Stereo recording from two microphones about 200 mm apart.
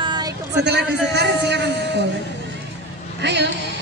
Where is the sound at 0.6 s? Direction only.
55° right (ahead or behind).